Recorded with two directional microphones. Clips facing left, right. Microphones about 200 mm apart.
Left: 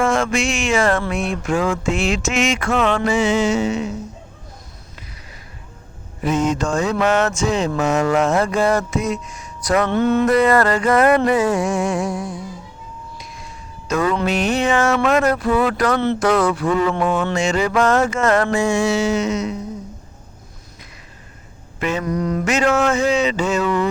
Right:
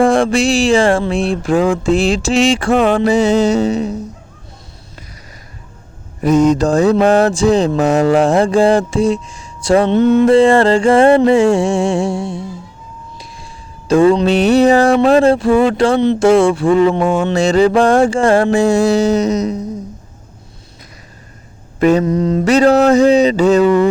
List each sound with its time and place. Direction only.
0.0 s music: 35° right (ahead or behind)
6.2 s music: 40° right (ahead or behind)
6.9 s speech: 30° right (ahead or behind)
13.1 s a sound: 30° right (ahead or behind)
15.0 s speech: 30° right (ahead or behind)
17.2 s music: 30° right (ahead or behind)
21.8 s mantra: 40° right (ahead or behind)
22.0 s music: 25° right (ahead or behind)